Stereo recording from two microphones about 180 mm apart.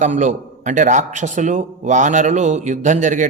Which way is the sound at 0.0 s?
45° right (ahead or behind).